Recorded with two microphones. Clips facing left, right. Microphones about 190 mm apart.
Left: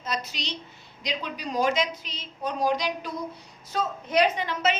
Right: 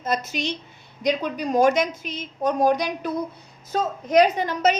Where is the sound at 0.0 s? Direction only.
50° right (ahead or behind).